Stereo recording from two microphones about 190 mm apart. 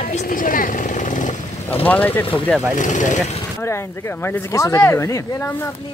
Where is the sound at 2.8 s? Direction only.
40° left (ahead or behind).